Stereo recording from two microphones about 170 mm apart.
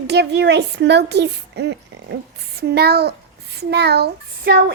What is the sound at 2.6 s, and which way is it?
Child singing, 70° right (ahead or behind).